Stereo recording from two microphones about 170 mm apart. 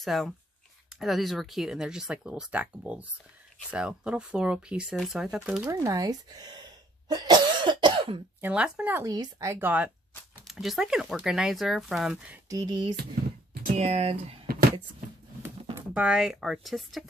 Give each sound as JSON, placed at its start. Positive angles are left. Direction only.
{"t": 0.0, "sound": "speech", "side_deg": 0}
{"t": 5.7, "sound": "speech", "side_deg": -20}
{"t": 7.1, "sound": "cough", "side_deg": -25}
{"t": 8.4, "sound": "speech", "side_deg": -5}
{"t": 9.0, "sound": "speech", "side_deg": -20}
{"t": 12.4, "sound": "speech", "side_deg": -25}
{"t": 13.7, "sound": "speech", "side_deg": -40}
{"t": 15.9, "sound": "speech", "side_deg": -5}